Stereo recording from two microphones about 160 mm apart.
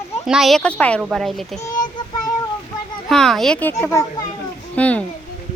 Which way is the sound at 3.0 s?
Centre (ahead or behind).